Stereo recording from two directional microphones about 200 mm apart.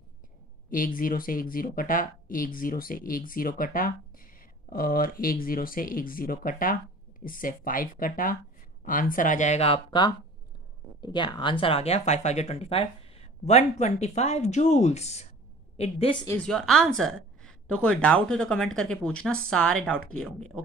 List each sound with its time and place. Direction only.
0.7 s a woman's voice: 45° left (ahead or behind); by 16.3 s 25° left (ahead or behind)
16.3 s a woman's voice: 5° left (ahead or behind)